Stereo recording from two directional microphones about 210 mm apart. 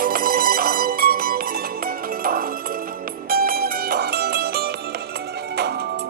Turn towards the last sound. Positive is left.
turn(degrees=-50)  # may be behind; listen again after turning